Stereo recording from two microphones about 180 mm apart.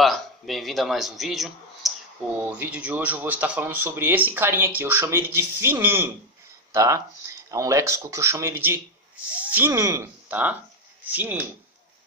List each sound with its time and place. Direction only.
0.0 s a man's voice: centre (ahead or behind)